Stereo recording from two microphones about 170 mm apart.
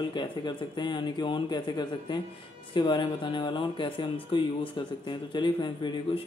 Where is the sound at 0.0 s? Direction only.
25° left (ahead or behind).